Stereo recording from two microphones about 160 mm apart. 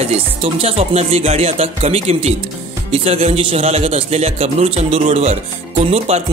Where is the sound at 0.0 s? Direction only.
35° right (ahead or behind).